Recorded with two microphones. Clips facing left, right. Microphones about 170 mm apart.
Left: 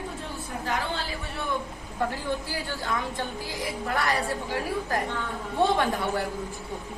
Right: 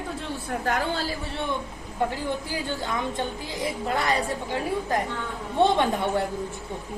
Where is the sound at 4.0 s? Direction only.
20° right (ahead or behind).